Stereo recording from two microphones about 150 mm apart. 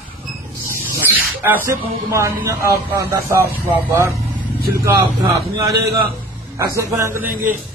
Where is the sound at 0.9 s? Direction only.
15° right (ahead or behind).